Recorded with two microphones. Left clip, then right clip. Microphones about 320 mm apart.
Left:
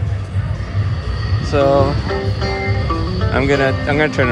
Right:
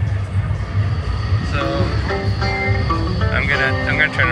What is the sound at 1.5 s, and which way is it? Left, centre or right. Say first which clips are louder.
Music: left 9 dB; centre.